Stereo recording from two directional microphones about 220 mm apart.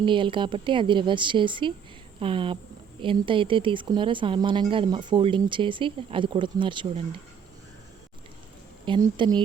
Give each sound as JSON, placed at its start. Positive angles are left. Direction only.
{"t": 0.0, "sound": "speech", "side_deg": -20}
{"t": 8.8, "sound": "speech", "side_deg": -20}